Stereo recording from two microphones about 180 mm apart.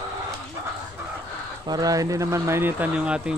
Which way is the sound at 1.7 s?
20° right (ahead or behind).